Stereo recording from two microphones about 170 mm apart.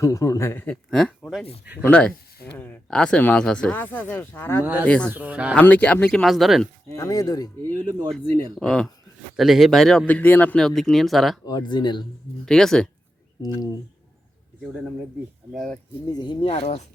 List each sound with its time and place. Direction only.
0.0 s speech: 20° left (ahead or behind)
4.6 s speech: 10° right (ahead or behind)
4.9 s speech: 5° left (ahead or behind)
5.1 s speech: 10° right (ahead or behind)
5.5 s speech: 10° left (ahead or behind)
6.9 s speech: 20° left (ahead or behind)
8.2 s speech: 25° right (ahead or behind)
8.5 s speech: 5° left (ahead or behind)
11.4 s speech: 25° left (ahead or behind)
12.5 s speech: 5° left (ahead or behind)
15.5 s speech: 5° left (ahead or behind)
16.0 s speech: 25° left (ahead or behind)